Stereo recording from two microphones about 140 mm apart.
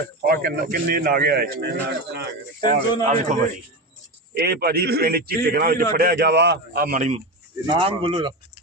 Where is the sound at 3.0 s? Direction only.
55° right (ahead or behind).